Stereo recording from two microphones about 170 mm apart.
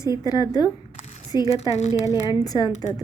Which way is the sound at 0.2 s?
20° left (ahead or behind).